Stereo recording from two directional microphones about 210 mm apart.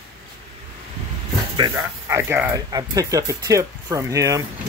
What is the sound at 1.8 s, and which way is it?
Speech, 10° right (ahead or behind).